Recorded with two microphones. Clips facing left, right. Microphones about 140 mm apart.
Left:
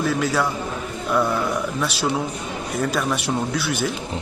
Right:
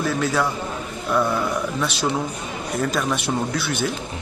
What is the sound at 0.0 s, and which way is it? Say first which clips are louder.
A man's voice: even; centre (ahead or behind).